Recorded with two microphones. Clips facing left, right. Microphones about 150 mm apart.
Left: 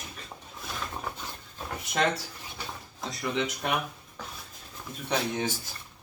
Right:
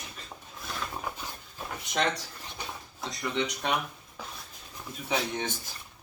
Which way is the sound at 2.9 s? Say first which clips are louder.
Left 1 dB; centre (ahead or behind).